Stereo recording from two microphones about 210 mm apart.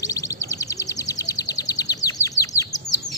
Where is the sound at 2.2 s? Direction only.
15° left (ahead or behind).